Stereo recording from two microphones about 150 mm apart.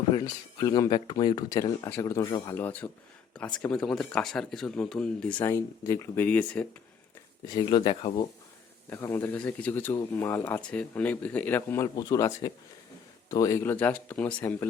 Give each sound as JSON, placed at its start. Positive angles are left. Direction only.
{"t": 0.3, "sound": "speech", "side_deg": 25}
{"t": 2.6, "sound": "speech", "side_deg": 10}
{"t": 5.4, "sound": "speech", "side_deg": 15}
{"t": 7.4, "sound": "speech", "side_deg": 25}
{"t": 8.9, "sound": "speech", "side_deg": 15}